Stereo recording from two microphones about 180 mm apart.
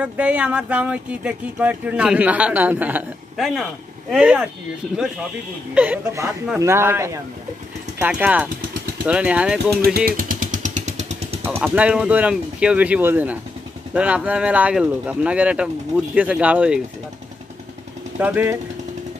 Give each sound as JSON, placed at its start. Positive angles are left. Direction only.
{"t": 0.0, "sound": "speech", "side_deg": -5}
{"t": 5.8, "sound": "speech", "side_deg": -10}
{"t": 9.9, "sound": "vehicle", "side_deg": -55}
{"t": 11.4, "sound": "speech", "side_deg": -10}
{"t": 18.2, "sound": "speech", "side_deg": -10}